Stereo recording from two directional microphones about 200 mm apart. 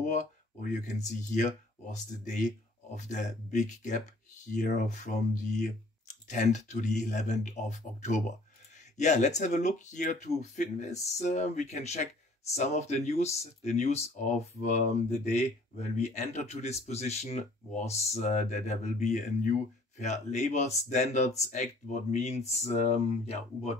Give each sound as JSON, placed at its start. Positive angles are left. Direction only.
{"t": 0.0, "sound": "speech", "side_deg": 40}